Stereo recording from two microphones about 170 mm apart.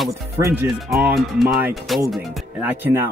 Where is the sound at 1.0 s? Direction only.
Centre (ahead or behind).